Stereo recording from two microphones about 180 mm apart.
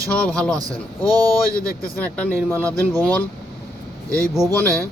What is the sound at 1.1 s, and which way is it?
Speech, 20° right (ahead or behind).